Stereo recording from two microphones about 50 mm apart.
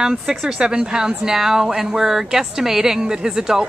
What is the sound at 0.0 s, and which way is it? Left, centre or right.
Speech, centre.